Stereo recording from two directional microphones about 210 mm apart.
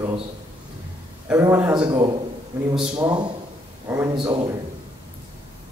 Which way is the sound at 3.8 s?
10° right (ahead or behind).